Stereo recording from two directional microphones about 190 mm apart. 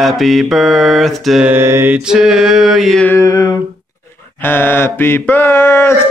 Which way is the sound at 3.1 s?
15° left (ahead or behind).